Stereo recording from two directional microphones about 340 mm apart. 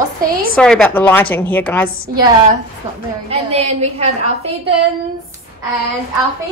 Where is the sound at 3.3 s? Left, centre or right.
Centre.